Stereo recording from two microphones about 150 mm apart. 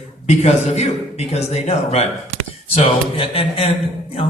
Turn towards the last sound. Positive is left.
turn(degrees=40)  # may be behind; listen again after turning